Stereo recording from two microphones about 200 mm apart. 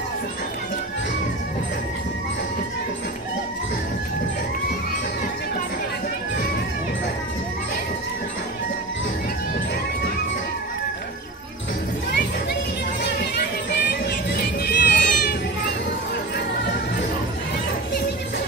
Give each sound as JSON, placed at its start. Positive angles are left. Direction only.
{"t": 13.0, "sound": "music", "side_deg": 55}